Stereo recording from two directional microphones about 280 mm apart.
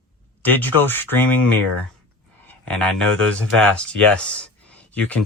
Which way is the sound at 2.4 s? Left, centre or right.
Centre.